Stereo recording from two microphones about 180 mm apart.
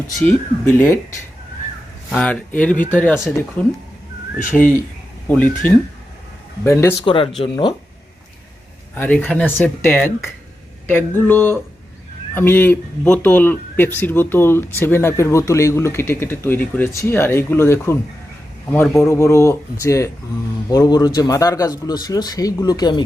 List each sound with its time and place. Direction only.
0.6 s speech: 10° left (ahead or behind)
2.0 s speech: 5° left (ahead or behind)
7.0 s a man's voice: 30° left (ahead or behind)
9.0 s a man's voice: 5° left (ahead or behind); by 23.0 s 25° left (ahead or behind)